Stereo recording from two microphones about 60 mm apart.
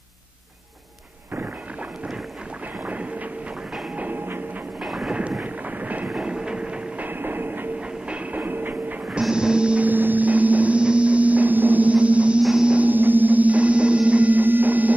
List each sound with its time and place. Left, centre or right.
2.8 s train: right
3.9 s music: right
4.8 s a sound: centre
5.4 s vehicle: right
6.0 s train: centre
7.1 s train: right
9.3 s music: centre
9.8 s a sound: right
12.4 s music: centre